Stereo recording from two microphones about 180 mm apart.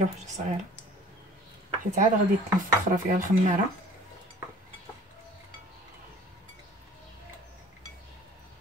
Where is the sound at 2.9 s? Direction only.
50° right (ahead or behind).